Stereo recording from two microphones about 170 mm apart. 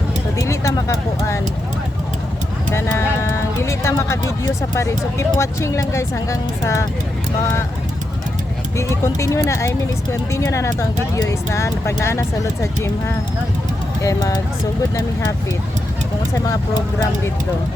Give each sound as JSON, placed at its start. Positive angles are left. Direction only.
{"t": 0.3, "sound": "speech", "side_deg": 15}
{"t": 2.7, "sound": "speech", "side_deg": 15}
{"t": 8.7, "sound": "speech", "side_deg": 15}
{"t": 14.0, "sound": "speech", "side_deg": 20}